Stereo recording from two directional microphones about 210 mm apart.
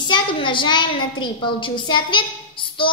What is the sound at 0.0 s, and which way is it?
A woman's voice, 25° left (ahead or behind).